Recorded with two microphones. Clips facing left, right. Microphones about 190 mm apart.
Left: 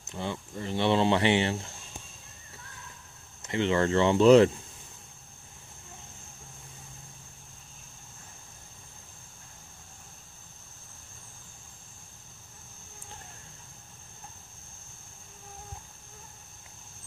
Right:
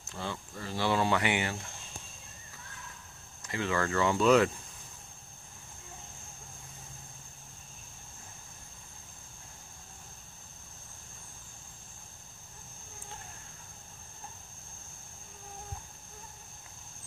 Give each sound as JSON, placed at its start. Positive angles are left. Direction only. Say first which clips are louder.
{"t": 0.0, "sound": "speech", "louder": "left 4 dB", "side_deg": 20}
{"t": 3.4, "sound": "speech", "louder": "left 6 dB", "side_deg": 25}